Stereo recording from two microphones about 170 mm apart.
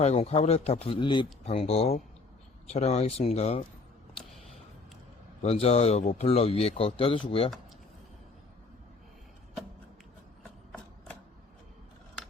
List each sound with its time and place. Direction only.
0.0 s speech: 40° left (ahead or behind)
5.4 s speech: 40° left (ahead or behind)